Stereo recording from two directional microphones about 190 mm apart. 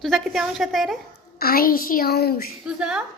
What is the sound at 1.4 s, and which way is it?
A woman's voice, 50° left (ahead or behind).